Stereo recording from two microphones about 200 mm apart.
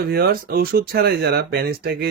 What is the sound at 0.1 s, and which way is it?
Speech, 50° right (ahead or behind).